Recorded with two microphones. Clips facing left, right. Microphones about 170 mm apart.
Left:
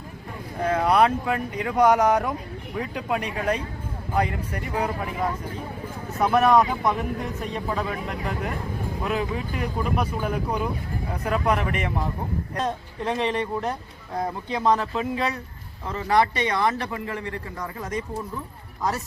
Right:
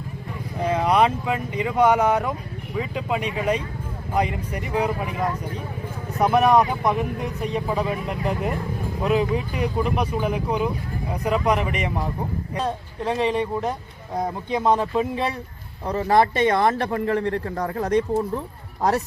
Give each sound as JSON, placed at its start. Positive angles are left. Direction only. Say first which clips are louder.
{"t": 0.6, "sound": "speech", "louder": "even", "side_deg": -10}
{"t": 6.2, "sound": "speech", "louder": "right 1 dB", "side_deg": 0}
{"t": 7.7, "sound": "speech", "louder": "right 3 dB", "side_deg": -15}
{"t": 14.6, "sound": "speech", "louder": "right 2 dB", "side_deg": -10}
{"t": 15.9, "sound": "speech", "louder": "right 3 dB", "side_deg": -40}